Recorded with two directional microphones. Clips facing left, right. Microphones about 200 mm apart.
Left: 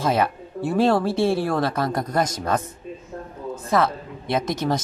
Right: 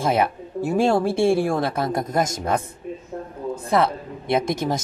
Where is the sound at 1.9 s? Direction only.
25° right (ahead or behind).